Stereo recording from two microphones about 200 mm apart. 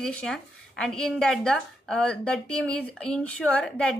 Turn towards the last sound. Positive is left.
turn(degrees=5)  # may be behind; listen again after turning